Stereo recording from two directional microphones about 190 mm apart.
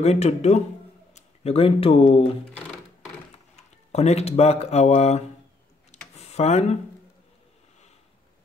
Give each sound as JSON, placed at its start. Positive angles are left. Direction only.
{"t": 0.0, "sound": "speech", "side_deg": 35}
{"t": 3.9, "sound": "speech", "side_deg": 35}